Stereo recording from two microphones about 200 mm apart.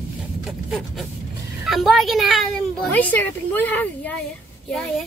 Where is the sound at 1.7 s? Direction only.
Centre (ahead or behind).